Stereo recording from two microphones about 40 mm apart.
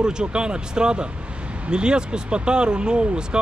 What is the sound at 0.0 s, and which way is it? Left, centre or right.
Speech, right.